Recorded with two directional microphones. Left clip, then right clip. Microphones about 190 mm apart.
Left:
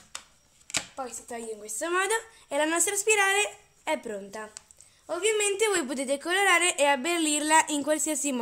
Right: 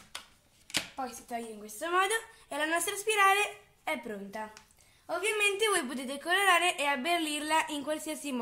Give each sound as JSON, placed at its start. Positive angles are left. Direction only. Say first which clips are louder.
{"t": 0.9, "sound": "a woman's voice", "louder": "left 1 dB", "side_deg": 55}